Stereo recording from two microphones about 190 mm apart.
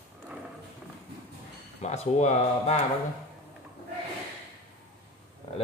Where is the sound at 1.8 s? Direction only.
35° left (ahead or behind).